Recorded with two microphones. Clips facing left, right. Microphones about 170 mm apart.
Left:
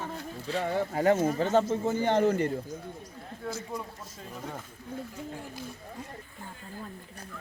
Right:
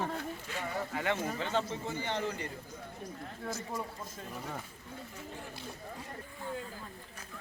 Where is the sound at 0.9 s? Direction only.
40° left (ahead or behind).